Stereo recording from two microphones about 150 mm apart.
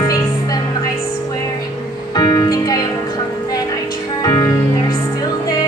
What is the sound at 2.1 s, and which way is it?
Music, 25° left (ahead or behind).